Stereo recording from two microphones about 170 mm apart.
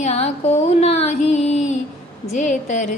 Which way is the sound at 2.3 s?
45° left (ahead or behind).